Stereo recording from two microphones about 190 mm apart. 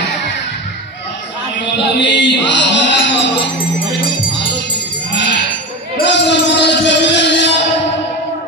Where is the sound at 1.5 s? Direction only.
65° left (ahead or behind).